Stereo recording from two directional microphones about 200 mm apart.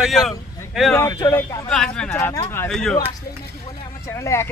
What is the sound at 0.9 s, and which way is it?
Speech, 15° left (ahead or behind).